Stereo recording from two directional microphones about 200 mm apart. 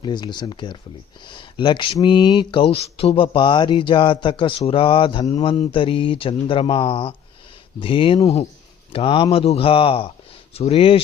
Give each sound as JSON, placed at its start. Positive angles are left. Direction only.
{"t": 0.0, "sound": "speech", "side_deg": 20}